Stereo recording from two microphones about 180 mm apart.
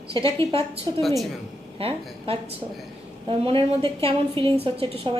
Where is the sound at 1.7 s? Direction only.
30° right (ahead or behind).